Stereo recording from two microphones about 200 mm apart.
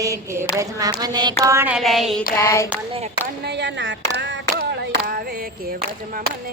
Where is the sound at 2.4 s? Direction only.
15° left (ahead or behind).